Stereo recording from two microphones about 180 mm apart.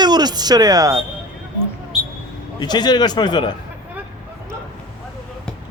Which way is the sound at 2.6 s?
25° left (ahead or behind).